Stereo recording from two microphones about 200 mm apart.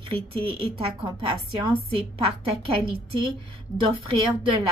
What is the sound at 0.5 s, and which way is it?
A woman's voice, 25° right (ahead or behind).